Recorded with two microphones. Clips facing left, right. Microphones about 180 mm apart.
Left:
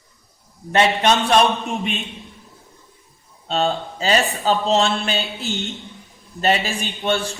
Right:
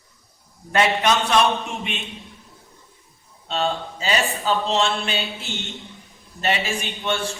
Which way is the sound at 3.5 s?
40° left (ahead or behind).